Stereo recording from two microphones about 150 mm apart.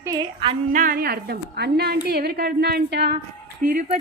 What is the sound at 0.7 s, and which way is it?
A woman's voice, 65° right (ahead or behind).